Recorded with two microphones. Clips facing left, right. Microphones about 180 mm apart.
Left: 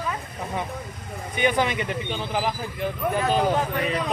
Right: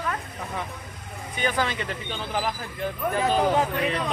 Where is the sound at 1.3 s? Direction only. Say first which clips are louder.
Left 4 dB; 20° left (ahead or behind).